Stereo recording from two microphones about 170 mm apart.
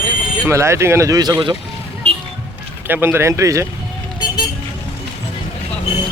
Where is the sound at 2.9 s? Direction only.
10° right (ahead or behind).